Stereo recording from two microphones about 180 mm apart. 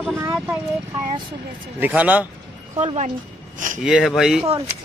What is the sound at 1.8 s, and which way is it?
Speech, 10° right (ahead or behind).